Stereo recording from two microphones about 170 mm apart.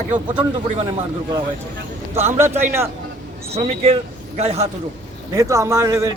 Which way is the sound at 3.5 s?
35° right (ahead or behind).